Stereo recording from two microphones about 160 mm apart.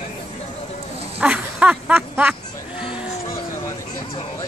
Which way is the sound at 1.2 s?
10° right (ahead or behind).